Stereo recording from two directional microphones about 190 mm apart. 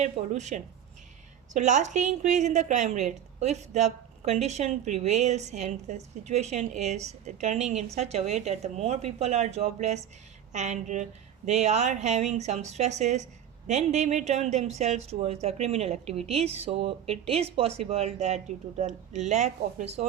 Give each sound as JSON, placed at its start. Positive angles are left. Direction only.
{"t": 0.0, "sound": "a woman's voice", "side_deg": -40}